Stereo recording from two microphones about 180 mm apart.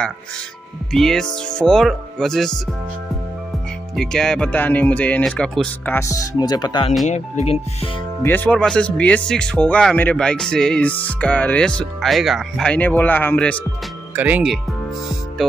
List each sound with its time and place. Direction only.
0.9 s speech: 5° left (ahead or behind)
3.9 s speech: 5° left (ahead or behind)
5.9 s speech: 20° left (ahead or behind)
7.1 s speech: 40° left (ahead or behind)
8.2 s speech: 10° left (ahead or behind)
14.1 s speech: 10° right (ahead or behind)